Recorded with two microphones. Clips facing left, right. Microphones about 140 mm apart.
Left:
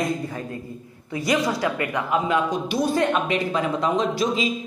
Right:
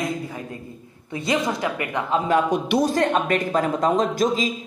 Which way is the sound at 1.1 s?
25° right (ahead or behind).